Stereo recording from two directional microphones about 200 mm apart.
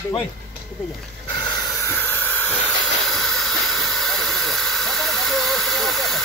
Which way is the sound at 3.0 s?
Centre (ahead or behind).